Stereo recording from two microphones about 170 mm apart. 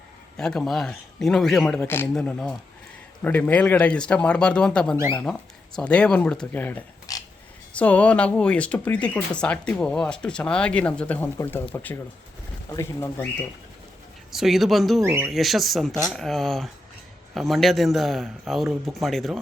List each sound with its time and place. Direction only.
0.3 s a man's voice: 5° left (ahead or behind)
14.3 s a man's voice: centre (ahead or behind)
15.0 s speech: 10° right (ahead or behind)
15.3 s a man's voice: centre (ahead or behind)